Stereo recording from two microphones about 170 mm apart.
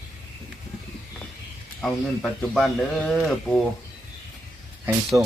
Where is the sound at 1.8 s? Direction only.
5° left (ahead or behind).